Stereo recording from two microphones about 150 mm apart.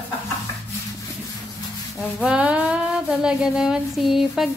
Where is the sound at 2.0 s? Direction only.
5° right (ahead or behind).